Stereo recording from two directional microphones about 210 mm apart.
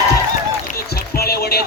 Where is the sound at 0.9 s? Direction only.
50° left (ahead or behind).